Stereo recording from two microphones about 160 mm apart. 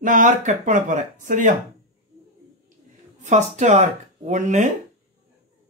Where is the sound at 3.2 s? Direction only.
45° right (ahead or behind).